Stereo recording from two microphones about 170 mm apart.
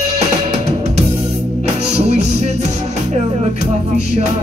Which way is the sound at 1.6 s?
40° right (ahead or behind).